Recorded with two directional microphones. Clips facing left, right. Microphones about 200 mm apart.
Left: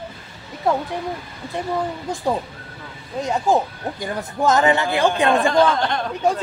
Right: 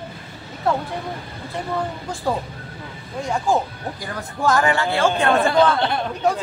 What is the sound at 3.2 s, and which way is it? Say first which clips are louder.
Speech: left 2 dB; 20° left (ahead or behind).